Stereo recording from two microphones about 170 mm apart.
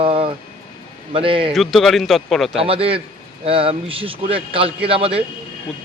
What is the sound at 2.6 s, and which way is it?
Speech, 35° right (ahead or behind).